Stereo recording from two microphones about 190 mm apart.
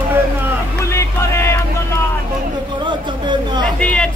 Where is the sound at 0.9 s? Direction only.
15° left (ahead or behind).